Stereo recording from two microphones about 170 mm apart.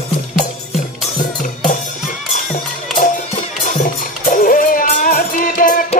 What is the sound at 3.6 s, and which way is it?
Music, 50° left (ahead or behind).